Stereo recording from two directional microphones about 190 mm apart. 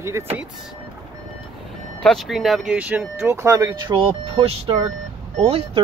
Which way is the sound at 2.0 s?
Centre (ahead or behind).